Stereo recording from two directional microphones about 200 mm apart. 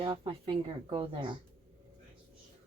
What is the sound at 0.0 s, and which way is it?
Speech, 25° right (ahead or behind).